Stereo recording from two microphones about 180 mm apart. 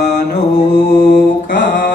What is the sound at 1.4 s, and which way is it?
Mantra, 80° left.